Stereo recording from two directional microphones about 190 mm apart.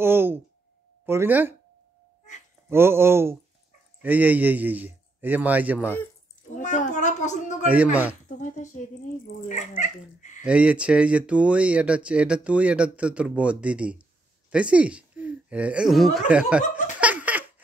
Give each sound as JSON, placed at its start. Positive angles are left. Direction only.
{"t": 0.0, "sound": "a sound", "side_deg": -10}
{"t": 1.0, "sound": "speech", "side_deg": -10}
{"t": 2.7, "sound": "speech", "side_deg": -10}
{"t": 6.5, "sound": "a sound", "side_deg": 40}
{"t": 7.6, "sound": "speech", "side_deg": -10}
{"t": 8.3, "sound": "speech", "side_deg": 40}
{"t": 10.4, "sound": "speech", "side_deg": -5}
{"t": 17.0, "sound": "baby laughter", "side_deg": -10}